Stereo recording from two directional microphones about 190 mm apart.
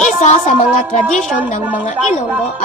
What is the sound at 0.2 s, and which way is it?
Speech, 40° left (ahead or behind).